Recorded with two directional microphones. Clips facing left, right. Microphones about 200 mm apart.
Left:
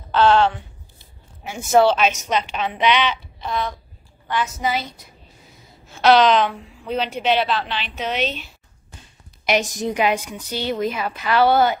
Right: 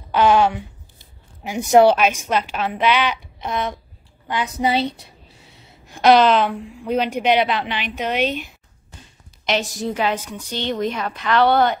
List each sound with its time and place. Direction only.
0.1 s a woman's voice: 10° right (ahead or behind)
3.3 s speech: 20° right (ahead or behind)
4.6 s a woman's voice: 30° right (ahead or behind)
5.9 s a woman's voice: 15° right (ahead or behind)
6.1 s a woman's voice: 5° right (ahead or behind)
9.5 s a woman's voice: 15° left (ahead or behind)